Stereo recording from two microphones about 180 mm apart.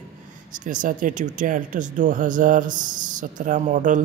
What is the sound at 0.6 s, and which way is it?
Speech, 45° right (ahead or behind).